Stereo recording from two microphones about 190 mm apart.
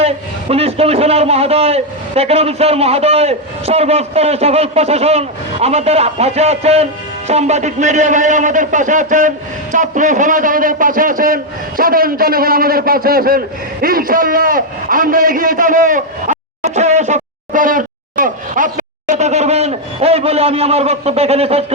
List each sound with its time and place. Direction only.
0.0 s a man's voice: 30° right (ahead or behind)